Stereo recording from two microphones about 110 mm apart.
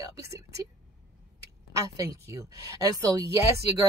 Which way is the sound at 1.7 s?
30° right (ahead or behind).